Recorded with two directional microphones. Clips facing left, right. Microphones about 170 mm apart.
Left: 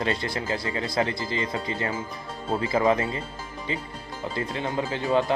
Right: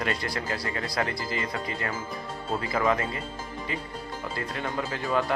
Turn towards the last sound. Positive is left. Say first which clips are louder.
# left 4 dB
turn(degrees=25)  # may be behind; listen again after turning